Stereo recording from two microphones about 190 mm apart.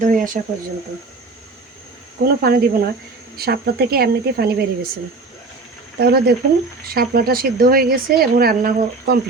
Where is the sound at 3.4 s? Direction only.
55° right (ahead or behind).